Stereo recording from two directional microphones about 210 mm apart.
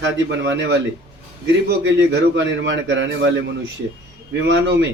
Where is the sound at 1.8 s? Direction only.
60° right (ahead or behind).